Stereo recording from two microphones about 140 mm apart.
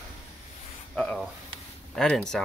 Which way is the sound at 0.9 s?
Centre (ahead or behind).